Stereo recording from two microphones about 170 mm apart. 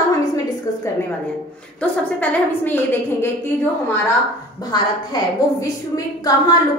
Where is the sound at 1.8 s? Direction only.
10° left (ahead or behind).